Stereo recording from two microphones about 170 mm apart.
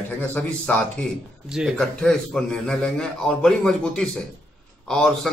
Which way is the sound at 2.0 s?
5° left (ahead or behind).